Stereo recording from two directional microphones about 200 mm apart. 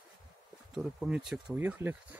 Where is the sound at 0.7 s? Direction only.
5° right (ahead or behind).